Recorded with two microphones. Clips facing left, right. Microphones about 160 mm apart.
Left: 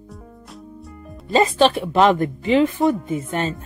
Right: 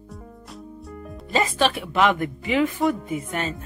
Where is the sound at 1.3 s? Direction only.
25° left (ahead or behind).